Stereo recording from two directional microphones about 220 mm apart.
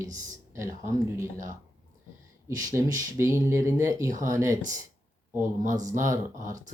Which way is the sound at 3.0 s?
15° right (ahead or behind).